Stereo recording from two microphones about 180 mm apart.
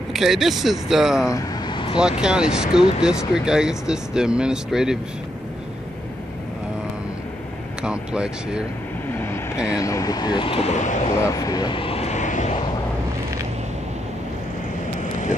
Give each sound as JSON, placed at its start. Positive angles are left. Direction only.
{"t": 0.1, "sound": "speech", "side_deg": 0}
{"t": 1.2, "sound": "vehicle", "side_deg": 20}
{"t": 2.0, "sound": "speech", "side_deg": -5}
{"t": 7.8, "sound": "speech", "side_deg": -5}
{"t": 9.1, "sound": "speech", "side_deg": 10}
{"t": 11.1, "sound": "vehicle", "side_deg": 20}